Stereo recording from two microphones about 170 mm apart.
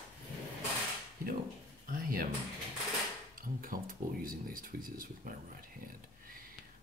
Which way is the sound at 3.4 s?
55° right (ahead or behind).